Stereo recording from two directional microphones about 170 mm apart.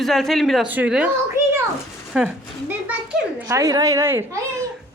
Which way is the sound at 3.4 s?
15° right (ahead or behind).